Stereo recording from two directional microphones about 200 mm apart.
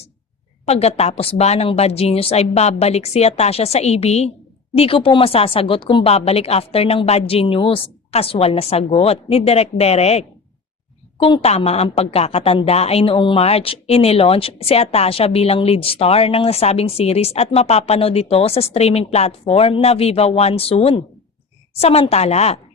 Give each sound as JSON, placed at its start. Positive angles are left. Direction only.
{"t": 0.6, "sound": "a woman's voice", "side_deg": 30}